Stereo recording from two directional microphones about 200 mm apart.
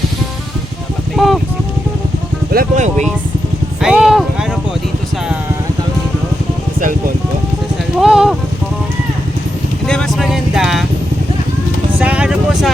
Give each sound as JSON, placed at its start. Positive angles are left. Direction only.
{"t": 1.1, "sound": "a sound", "side_deg": 0}
{"t": 2.5, "sound": "speech", "side_deg": -45}
{"t": 3.8, "sound": "clip-clop", "side_deg": -5}
{"t": 8.0, "sound": "clip-clop", "side_deg": -5}
{"t": 9.8, "sound": "vehicle", "side_deg": 5}
{"t": 11.9, "sound": "vehicle", "side_deg": -5}